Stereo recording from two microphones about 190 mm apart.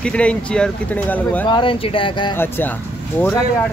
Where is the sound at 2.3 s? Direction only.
10° left (ahead or behind).